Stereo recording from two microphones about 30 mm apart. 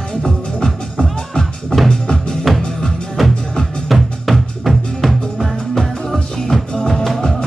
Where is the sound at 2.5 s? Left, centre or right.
Centre.